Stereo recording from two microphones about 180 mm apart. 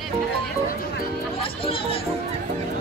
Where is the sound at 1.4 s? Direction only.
30° left (ahead or behind).